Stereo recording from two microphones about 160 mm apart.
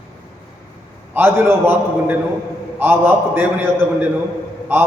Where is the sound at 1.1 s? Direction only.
15° right (ahead or behind).